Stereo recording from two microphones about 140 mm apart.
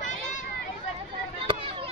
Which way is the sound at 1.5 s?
35° right (ahead or behind).